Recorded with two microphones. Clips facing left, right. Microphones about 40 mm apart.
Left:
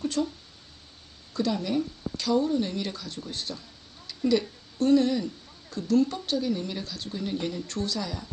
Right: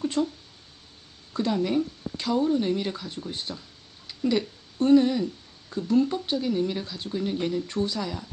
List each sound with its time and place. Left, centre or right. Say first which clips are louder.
0.2 s speech: right 2 dB; centre
1.3 s speech: right 2 dB; right